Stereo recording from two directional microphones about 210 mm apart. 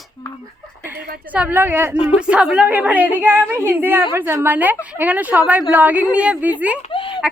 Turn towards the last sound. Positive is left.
turn(degrees=25)  # may be behind; listen again after turning